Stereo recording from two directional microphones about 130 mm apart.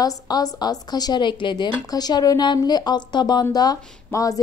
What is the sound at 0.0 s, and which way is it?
A woman's voice, 30° left (ahead or behind).